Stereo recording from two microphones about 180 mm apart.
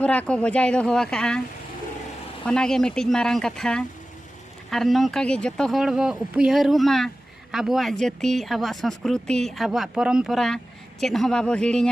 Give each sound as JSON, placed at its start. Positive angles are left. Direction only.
{"t": 0.0, "sound": "speech", "side_deg": 5}
{"t": 2.5, "sound": "speech", "side_deg": 5}